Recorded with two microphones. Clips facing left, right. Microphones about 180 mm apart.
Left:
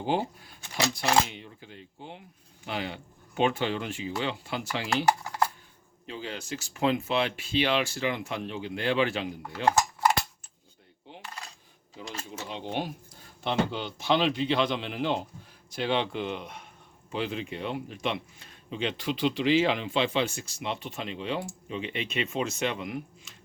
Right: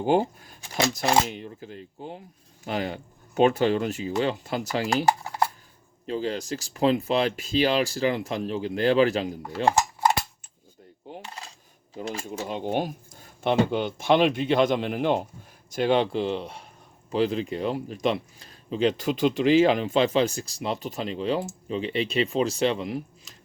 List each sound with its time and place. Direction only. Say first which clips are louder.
0.0 s a sound: right 6 dB; 45° right (ahead or behind)
1.3 s speech: right 8 dB; 45° right (ahead or behind)
5.0 s typing: right 2 dB; 25° right (ahead or behind)
6.1 s speech: right 8 dB; 40° right (ahead or behind)
9.5 s cutlery: right 2 dB; 25° right (ahead or behind)
11.1 s coin: right 7 dB; 45° right (ahead or behind)
12.2 s speech: right 5 dB; 45° right (ahead or behind); by 23.3 s 30° right (ahead or behind)